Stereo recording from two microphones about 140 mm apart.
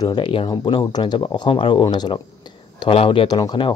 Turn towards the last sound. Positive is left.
turn(degrees=35)  # may be behind; listen again after turning